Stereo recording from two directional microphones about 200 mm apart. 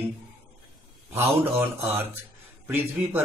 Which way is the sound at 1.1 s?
10° right (ahead or behind).